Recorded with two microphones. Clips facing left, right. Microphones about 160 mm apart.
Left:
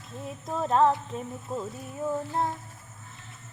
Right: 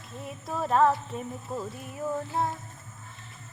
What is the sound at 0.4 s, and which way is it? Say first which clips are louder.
Music: even; 5° right (ahead or behind).